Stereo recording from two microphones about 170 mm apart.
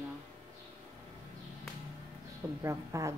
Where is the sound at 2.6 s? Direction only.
15° right (ahead or behind).